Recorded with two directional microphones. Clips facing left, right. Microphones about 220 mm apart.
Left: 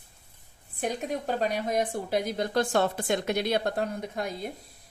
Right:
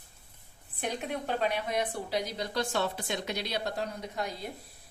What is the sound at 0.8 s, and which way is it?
A woman's voice, 40° left (ahead or behind).